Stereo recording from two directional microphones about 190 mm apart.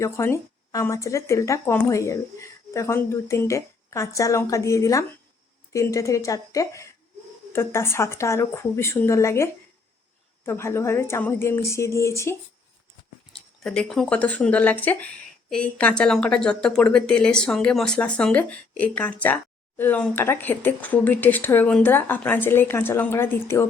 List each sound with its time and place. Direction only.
0.0 s speech: 15° left (ahead or behind)
13.7 s speech: centre (ahead or behind)